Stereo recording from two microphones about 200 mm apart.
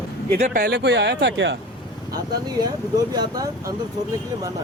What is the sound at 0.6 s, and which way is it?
Speech, 55° right (ahead or behind).